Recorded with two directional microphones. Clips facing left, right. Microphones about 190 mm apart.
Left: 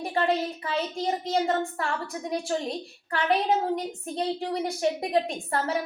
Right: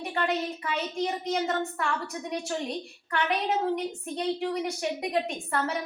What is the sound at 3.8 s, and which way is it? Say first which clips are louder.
A woman's voice: left 1 dB; 35° left (ahead or behind).